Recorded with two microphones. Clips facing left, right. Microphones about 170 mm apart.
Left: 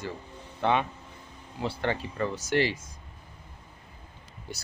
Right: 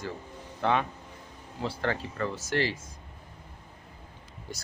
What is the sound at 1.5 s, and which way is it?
Speech, 15° left (ahead or behind).